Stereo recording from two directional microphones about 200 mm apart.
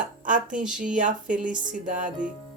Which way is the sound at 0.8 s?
40° right (ahead or behind).